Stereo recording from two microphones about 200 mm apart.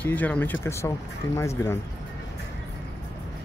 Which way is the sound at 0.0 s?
10° left (ahead or behind).